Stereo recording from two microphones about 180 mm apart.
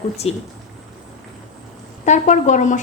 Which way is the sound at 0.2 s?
35° left (ahead or behind).